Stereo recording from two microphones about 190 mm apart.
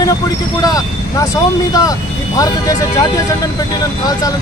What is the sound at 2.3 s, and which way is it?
Speech, 20° left (ahead or behind).